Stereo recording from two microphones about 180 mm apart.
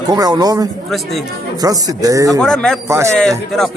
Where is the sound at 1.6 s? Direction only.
20° right (ahead or behind).